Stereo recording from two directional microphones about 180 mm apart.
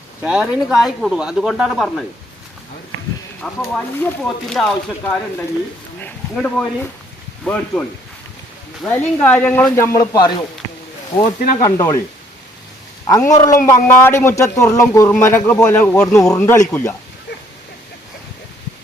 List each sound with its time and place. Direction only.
0.2 s speech: 5° right (ahead or behind)
3.6 s a man's voice: 5° left (ahead or behind)
11.6 s speech: 20° left (ahead or behind)
13.1 s a man's voice: 20° left (ahead or behind)